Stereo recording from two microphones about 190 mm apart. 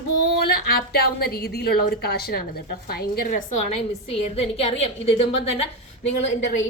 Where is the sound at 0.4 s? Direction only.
55° left (ahead or behind); by 5.6 s 30° left (ahead or behind).